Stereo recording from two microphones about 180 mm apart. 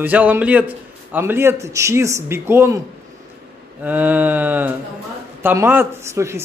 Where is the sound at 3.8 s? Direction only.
10° right (ahead or behind).